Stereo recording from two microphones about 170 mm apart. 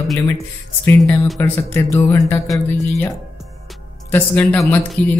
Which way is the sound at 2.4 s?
Centre (ahead or behind).